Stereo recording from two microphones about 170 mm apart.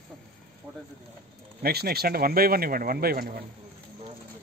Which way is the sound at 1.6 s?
65° right (ahead or behind).